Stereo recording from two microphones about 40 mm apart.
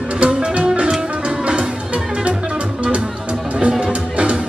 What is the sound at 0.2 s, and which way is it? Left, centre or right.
Music, right.